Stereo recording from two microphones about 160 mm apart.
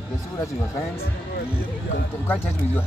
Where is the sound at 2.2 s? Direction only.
15° left (ahead or behind).